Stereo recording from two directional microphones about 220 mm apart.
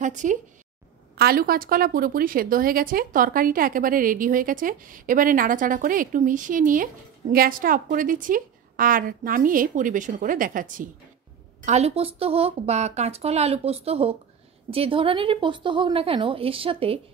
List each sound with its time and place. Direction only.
0.0 s a woman's voice: 35° right (ahead or behind)
1.1 s a woman's voice: 45° right (ahead or behind); by 17.0 s 25° right (ahead or behind)